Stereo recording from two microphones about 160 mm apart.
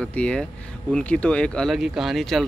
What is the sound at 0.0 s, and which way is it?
Speech, 5° left (ahead or behind).